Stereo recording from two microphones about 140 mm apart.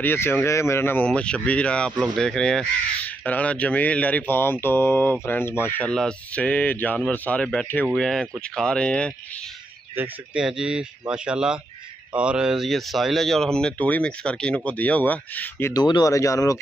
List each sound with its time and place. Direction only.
0.0 s speech: 15° left (ahead or behind)
9.9 s speech: 5° right (ahead or behind); by 15.7 s 10° left (ahead or behind)
15.7 s speech: 30° left (ahead or behind)